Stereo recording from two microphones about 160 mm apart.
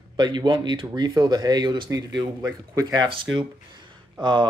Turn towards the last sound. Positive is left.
turn(degrees=-30)  # may be behind; listen again after turning